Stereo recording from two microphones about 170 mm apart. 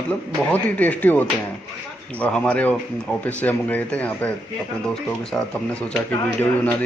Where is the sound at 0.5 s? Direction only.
10° left (ahead or behind).